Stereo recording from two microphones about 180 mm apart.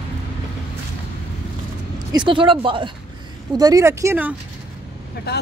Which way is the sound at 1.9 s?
25° right (ahead or behind).